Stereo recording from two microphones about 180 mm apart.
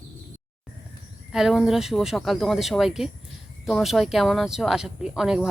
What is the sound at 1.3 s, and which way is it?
Speech, centre (ahead or behind).